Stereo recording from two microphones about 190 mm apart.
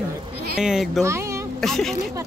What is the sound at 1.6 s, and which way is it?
Speech, centre (ahead or behind).